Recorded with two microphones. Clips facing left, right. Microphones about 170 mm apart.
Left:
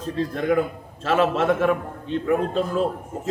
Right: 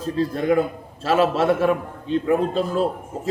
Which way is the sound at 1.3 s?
35° right (ahead or behind).